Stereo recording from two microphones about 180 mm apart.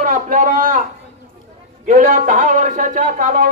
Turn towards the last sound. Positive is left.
turn(degrees=-50)  # may be behind; listen again after turning